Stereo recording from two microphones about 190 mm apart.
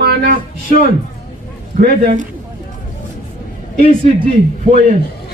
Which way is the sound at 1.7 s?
40° right (ahead or behind).